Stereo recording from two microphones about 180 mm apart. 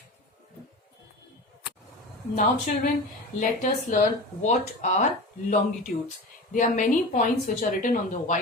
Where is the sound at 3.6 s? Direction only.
45° left (ahead or behind).